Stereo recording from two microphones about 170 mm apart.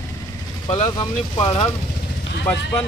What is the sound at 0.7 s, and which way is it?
Speech, 30° left (ahead or behind).